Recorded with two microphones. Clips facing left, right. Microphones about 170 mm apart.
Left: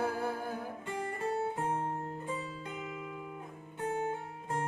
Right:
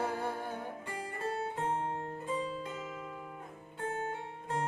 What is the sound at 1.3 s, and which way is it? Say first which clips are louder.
Music: left 1 dB; 15° left (ahead or behind).